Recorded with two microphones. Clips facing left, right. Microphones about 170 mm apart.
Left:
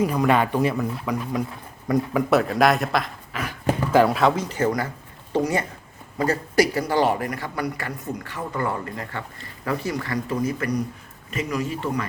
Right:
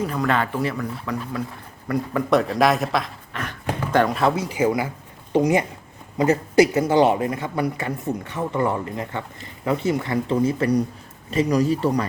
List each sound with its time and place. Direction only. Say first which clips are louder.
0.0 s speech: left 3 dB; 10° left (ahead or behind)
2.3 s a man's voice: right 1 dB; centre (ahead or behind); by 12.0 s 35° right (ahead or behind)